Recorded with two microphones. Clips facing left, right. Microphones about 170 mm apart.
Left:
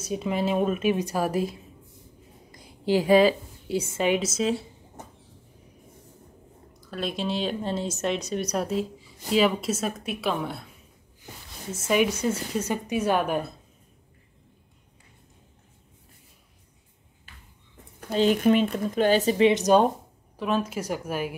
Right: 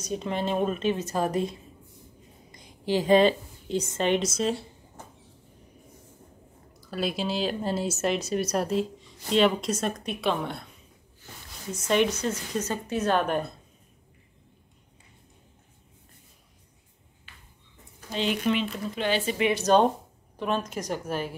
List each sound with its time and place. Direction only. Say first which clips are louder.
0.0 s speech: left 2 dB; 5° left (ahead or behind)
2.8 s a woman's voice: left 1 dB; 15° left (ahead or behind)
6.8 s speech: right 1 dB; 5° right (ahead or behind)
11.9 s a woman's voice: left 1 dB; 10° left (ahead or behind)
18.1 s speech: left 6 dB; 45° left (ahead or behind)
19.6 s a woman's voice: left 1 dB; 10° left (ahead or behind)